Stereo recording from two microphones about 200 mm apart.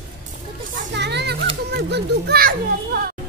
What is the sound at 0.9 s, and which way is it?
A child's voice, 60° right (ahead or behind).